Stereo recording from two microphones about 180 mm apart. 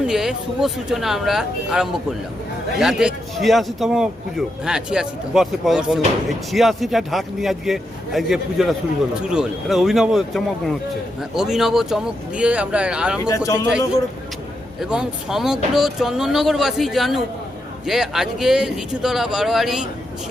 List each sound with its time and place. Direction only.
0.0 s a man's voice: 5° right (ahead or behind)
13.3 s a man's voice: 20° left (ahead or behind)
14.8 s a man's voice: 5° right (ahead or behind)